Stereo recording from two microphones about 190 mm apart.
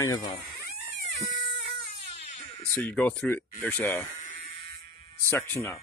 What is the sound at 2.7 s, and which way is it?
Speech, 10° left (ahead or behind).